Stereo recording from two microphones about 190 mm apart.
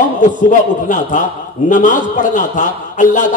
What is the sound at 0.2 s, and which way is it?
A man's voice, 40° left (ahead or behind).